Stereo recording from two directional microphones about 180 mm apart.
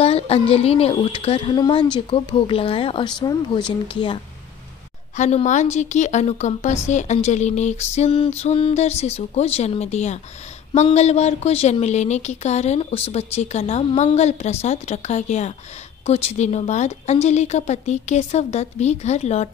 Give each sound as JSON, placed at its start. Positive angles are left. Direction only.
{"t": 0.0, "sound": "a woman's voice", "side_deg": 35}
{"t": 5.1, "sound": "a woman's voice", "side_deg": 40}